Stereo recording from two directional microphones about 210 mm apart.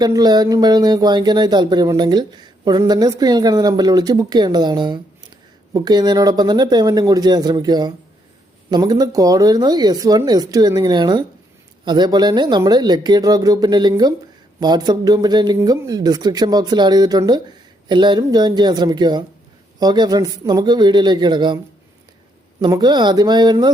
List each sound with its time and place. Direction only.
0.0 s speech: 20° right (ahead or behind)
22.6 s speech: 20° right (ahead or behind)